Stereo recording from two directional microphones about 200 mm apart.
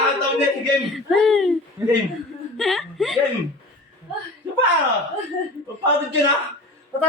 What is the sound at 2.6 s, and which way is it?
Speech, centre (ahead or behind).